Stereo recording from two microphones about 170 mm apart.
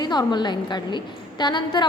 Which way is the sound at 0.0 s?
25° left (ahead or behind).